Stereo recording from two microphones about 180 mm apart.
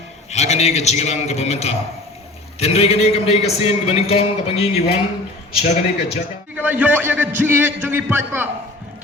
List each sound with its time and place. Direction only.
0.3 s a man's voice: 40° left (ahead or behind)
6.6 s a man's voice: 10° right (ahead or behind)